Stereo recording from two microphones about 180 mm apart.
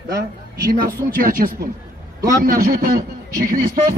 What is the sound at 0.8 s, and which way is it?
A man's voice, 50° right (ahead or behind).